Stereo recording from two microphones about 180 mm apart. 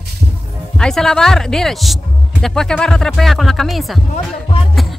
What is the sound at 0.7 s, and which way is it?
Speech, 5° left (ahead or behind).